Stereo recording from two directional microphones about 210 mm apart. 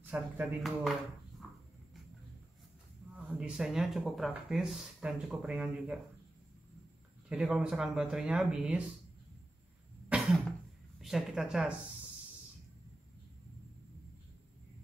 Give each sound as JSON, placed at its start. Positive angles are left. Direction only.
{"t": 0.1, "sound": "speech", "side_deg": -10}
{"t": 3.2, "sound": "speech", "side_deg": -5}
{"t": 7.2, "sound": "speech", "side_deg": -5}
{"t": 10.1, "sound": "cough", "side_deg": -5}
{"t": 11.0, "sound": "a woman's voice", "side_deg": 0}